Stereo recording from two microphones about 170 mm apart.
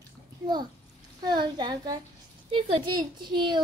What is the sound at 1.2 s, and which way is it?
A woman's voice, 25° right (ahead or behind).